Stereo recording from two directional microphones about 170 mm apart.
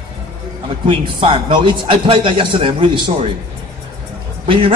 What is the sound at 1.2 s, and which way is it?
A man's voice, 30° right (ahead or behind).